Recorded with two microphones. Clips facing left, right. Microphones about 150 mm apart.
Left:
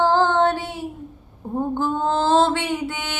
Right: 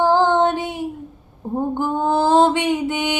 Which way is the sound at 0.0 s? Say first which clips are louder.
Right 2 dB; 15° right (ahead or behind).